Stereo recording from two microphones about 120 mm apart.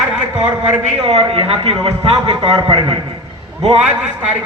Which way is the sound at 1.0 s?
55° right (ahead or behind).